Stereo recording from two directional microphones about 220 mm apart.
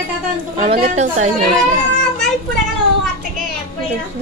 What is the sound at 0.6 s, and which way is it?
Speech, 25° right (ahead or behind).